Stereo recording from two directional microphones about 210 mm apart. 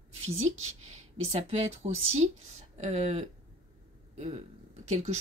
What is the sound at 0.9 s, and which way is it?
A woman's voice, 30° right (ahead or behind).